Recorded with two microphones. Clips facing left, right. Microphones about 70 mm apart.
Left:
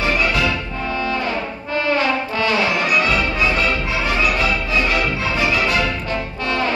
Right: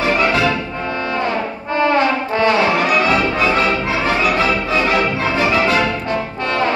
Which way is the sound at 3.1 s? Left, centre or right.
Right.